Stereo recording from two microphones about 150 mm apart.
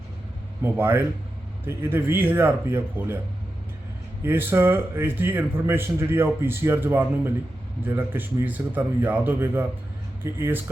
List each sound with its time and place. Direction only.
0.6 s a man's voice: 15° right (ahead or behind)
4.2 s a man's voice: 15° right (ahead or behind)